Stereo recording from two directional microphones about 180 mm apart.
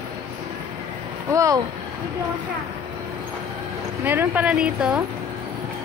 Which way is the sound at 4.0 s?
10° right (ahead or behind).